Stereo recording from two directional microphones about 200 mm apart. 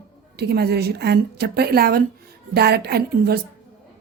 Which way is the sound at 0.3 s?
55° right (ahead or behind).